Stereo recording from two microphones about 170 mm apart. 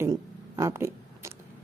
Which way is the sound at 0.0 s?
20° right (ahead or behind).